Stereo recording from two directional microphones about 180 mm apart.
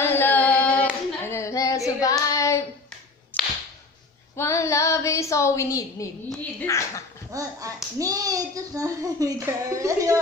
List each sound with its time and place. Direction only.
0.0 s a sound: 10° left (ahead or behind)
2.0 s child singing: 20° left (ahead or behind)
3.3 s whip: 10° left (ahead or behind)
4.4 s a woman's voice: 15° left (ahead or behind)
7.3 s a child's voice: 20° right (ahead or behind)